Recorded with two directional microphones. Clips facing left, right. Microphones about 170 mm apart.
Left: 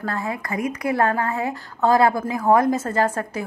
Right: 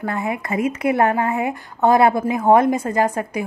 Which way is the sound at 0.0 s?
20° right (ahead or behind).